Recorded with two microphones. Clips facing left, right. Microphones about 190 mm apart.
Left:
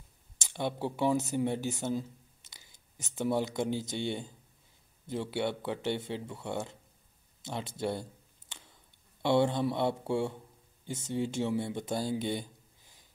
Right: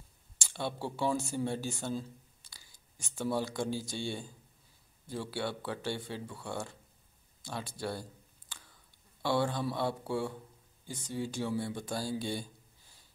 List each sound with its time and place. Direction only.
0.4 s speech: 20° left (ahead or behind)
7.4 s a sound: 20° left (ahead or behind)
9.2 s speech: 20° left (ahead or behind)